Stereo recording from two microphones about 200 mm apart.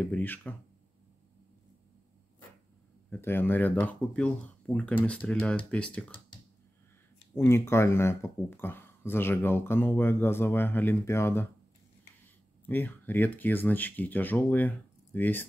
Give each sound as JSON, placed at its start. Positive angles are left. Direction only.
{"t": 0.0, "sound": "speech", "side_deg": 10}
{"t": 3.1, "sound": "speech", "side_deg": 10}
{"t": 7.3, "sound": "speech", "side_deg": 15}
{"t": 12.6, "sound": "speech", "side_deg": 10}